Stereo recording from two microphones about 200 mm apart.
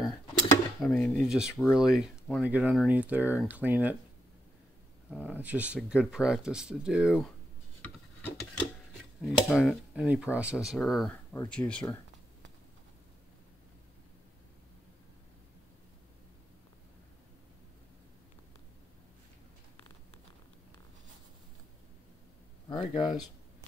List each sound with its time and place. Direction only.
0.8 s speech: 5° left (ahead or behind)
5.1 s speech: 5° right (ahead or behind)
7.8 s filing: 5° left (ahead or behind)
9.2 s speech: centre (ahead or behind)
22.7 s speech: 20° left (ahead or behind)